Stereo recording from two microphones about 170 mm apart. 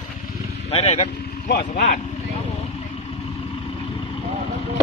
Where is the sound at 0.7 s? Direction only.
40° left (ahead or behind).